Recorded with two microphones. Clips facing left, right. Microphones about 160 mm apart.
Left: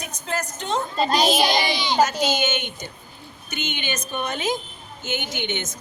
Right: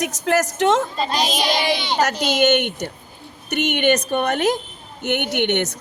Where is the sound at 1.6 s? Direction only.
65° right (ahead or behind).